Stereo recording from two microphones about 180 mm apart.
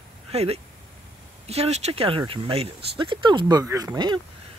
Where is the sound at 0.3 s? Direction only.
35° right (ahead or behind).